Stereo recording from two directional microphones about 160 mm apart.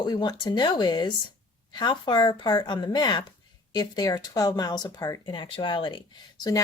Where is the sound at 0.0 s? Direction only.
25° left (ahead or behind).